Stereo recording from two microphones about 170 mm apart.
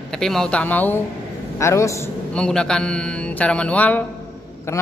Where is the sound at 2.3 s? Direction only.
5° left (ahead or behind).